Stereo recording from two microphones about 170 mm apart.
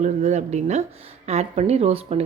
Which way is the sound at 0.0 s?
40° right (ahead or behind).